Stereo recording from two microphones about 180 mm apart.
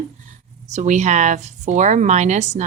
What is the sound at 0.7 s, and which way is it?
Speech, 40° right (ahead or behind).